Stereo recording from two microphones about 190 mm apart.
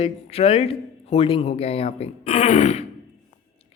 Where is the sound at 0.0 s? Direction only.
35° left (ahead or behind).